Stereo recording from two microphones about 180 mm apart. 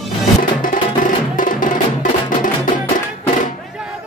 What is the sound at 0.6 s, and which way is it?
Music, 45° left (ahead or behind).